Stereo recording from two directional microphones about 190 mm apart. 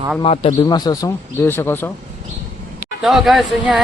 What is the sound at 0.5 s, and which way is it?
Speech, 20° left (ahead or behind).